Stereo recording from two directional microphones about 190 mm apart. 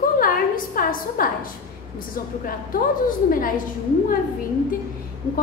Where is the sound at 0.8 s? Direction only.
50° left (ahead or behind).